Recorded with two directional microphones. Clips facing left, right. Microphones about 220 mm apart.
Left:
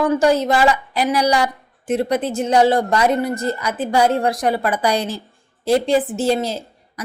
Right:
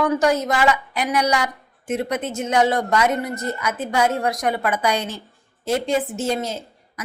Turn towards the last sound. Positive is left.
turn(degrees=35)  # may be behind; listen again after turning